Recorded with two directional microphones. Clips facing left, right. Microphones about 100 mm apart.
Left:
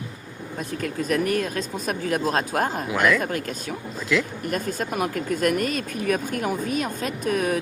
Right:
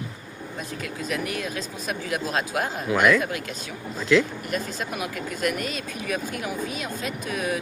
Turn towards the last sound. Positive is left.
turn(degrees=45)  # may be behind; listen again after turning